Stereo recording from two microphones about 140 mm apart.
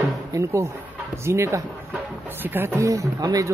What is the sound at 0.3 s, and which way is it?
Speech, 20° right (ahead or behind).